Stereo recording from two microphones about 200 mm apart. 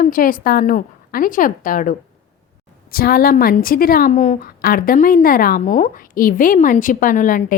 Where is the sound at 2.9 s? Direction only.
50° left (ahead or behind).